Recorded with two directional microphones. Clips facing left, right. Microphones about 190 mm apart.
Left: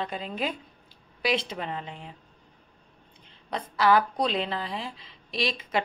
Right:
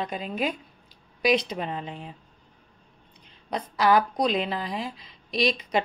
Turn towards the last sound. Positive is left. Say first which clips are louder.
# right 4 dB
turn(degrees=-20)  # may be behind; listen again after turning